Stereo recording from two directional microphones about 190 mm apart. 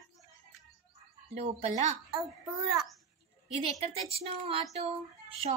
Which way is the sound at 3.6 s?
30° right (ahead or behind).